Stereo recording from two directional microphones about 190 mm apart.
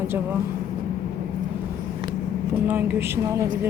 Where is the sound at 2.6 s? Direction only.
10° right (ahead or behind).